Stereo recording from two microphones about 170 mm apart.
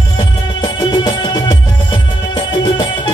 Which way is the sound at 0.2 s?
25° left (ahead or behind).